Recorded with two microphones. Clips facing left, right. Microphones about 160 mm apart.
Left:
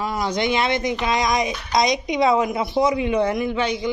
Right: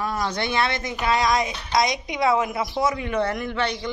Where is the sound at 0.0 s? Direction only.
15° left (ahead or behind).